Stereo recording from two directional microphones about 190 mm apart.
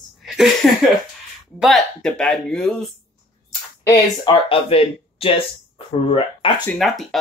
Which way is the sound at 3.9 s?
25° left (ahead or behind).